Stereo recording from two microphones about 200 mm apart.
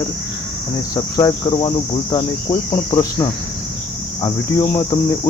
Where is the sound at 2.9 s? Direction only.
20° left (ahead or behind).